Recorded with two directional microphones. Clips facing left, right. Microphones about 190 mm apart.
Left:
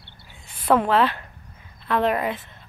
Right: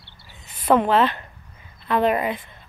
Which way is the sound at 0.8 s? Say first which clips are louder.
Right 1 dB; centre (ahead or behind).